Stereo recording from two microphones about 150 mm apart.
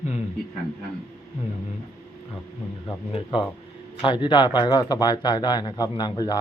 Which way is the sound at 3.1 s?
35° left (ahead or behind).